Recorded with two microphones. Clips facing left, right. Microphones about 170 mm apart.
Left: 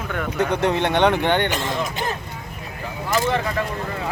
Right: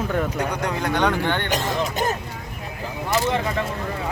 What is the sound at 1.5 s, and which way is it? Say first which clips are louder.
Speech: right 1 dB; 40° right (ahead or behind).